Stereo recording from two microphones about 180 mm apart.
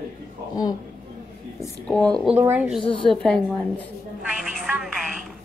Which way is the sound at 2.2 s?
10° right (ahead or behind).